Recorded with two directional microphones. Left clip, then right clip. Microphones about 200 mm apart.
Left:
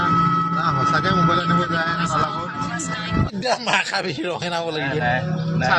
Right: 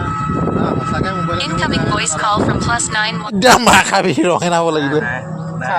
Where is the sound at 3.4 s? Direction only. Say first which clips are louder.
Right 12 dB; 50° right (ahead or behind); by 4.7 s 35° right (ahead or behind).